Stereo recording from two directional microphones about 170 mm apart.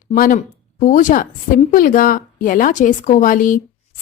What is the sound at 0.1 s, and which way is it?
A woman's voice, 50° left (ahead or behind).